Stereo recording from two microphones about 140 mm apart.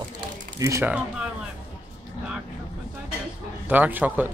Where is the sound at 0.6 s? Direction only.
20° right (ahead or behind).